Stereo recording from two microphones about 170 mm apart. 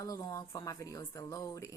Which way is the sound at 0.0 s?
20° left (ahead or behind).